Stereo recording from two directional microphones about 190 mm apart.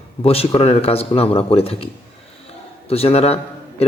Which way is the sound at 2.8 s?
30° left (ahead or behind).